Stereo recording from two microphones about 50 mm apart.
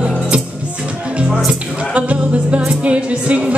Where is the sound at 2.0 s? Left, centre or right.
Right.